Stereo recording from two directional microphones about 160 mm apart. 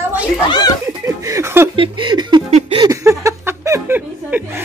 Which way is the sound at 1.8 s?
30° right (ahead or behind).